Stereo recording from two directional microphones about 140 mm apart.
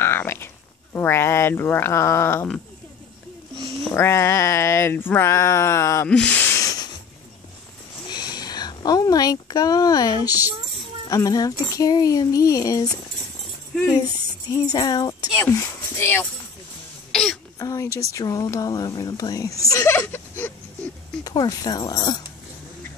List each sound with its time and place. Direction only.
0.0 s a sound: 15° left (ahead or behind)
0.9 s speech: 15° left (ahead or behind)
3.9 s speech: 20° left (ahead or behind)
6.0 s a sound: 10° left (ahead or behind)
8.1 s a sound: 30° left (ahead or behind)
10.2 s a woman's voice: 15° right (ahead or behind)
11.1 s speech: 25° left (ahead or behind)
14.5 s speech: 30° left (ahead or behind)
15.5 s speech: 20° left (ahead or behind)
17.1 s throat clearing: 5° left (ahead or behind)
17.6 s speech: 25° left (ahead or behind)
21.2 s speech: 25° left (ahead or behind)